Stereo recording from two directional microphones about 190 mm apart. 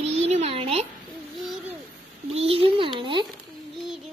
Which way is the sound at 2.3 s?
30° right (ahead or behind).